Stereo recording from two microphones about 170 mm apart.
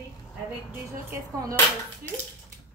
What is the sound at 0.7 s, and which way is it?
Speech, 10° right (ahead or behind).